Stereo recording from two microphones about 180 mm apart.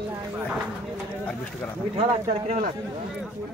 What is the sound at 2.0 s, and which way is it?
Speech, 40° right (ahead or behind).